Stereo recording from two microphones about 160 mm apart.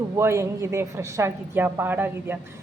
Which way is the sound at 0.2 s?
15° right (ahead or behind).